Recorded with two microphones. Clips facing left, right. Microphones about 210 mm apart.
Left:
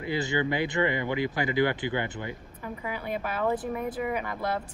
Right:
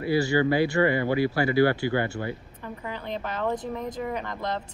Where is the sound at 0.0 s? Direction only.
20° left (ahead or behind).